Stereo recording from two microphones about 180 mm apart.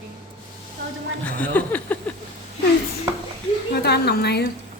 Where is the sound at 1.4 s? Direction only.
10° left (ahead or behind).